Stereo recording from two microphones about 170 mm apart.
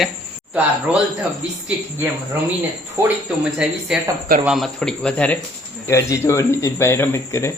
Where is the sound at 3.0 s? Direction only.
15° right (ahead or behind).